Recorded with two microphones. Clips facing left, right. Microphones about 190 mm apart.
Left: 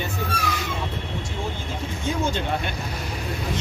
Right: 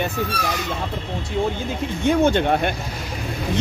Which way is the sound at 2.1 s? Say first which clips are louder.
Right 8 dB; 60° right (ahead or behind).